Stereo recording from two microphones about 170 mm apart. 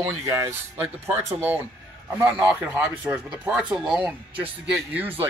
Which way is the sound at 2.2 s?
15° right (ahead or behind).